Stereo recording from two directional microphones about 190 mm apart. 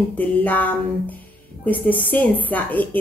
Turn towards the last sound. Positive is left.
turn(degrees=10)  # may be behind; listen again after turning